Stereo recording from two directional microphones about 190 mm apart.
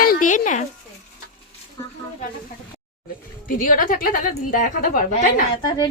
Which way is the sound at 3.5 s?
45° left (ahead or behind).